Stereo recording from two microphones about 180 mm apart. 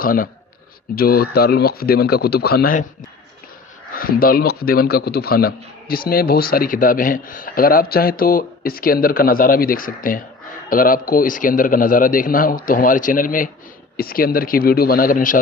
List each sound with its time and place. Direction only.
0.0 s a man's voice: 50° left (ahead or behind)
3.9 s a man's voice: 55° left (ahead or behind)